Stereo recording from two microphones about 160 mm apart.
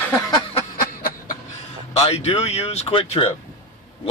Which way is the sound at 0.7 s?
60° left (ahead or behind).